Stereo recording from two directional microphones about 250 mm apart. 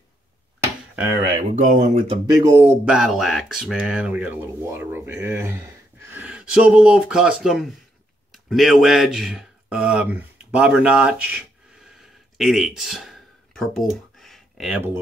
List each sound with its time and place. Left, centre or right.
1.5 s speech: right
2.8 s speech: centre
8.3 s a sound: centre